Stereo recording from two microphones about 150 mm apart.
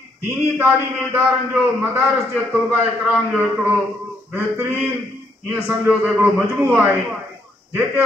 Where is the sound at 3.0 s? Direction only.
10° right (ahead or behind).